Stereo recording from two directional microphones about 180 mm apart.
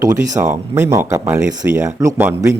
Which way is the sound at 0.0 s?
20° right (ahead or behind).